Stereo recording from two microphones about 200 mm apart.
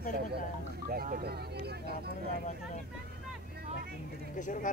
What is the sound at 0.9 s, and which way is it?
Speech, 50° right (ahead or behind).